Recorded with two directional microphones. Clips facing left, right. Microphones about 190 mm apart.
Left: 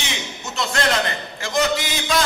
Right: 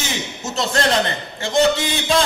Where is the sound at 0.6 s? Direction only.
30° right (ahead or behind).